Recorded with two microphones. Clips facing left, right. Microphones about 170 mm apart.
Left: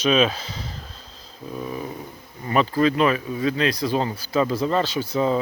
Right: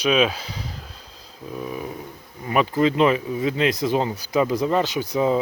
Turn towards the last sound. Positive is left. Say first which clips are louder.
# right 1 dB
turn(degrees=-15)  # may be behind; listen again after turning